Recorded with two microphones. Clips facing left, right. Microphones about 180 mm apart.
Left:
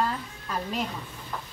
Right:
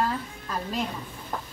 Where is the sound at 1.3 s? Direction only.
45° right (ahead or behind).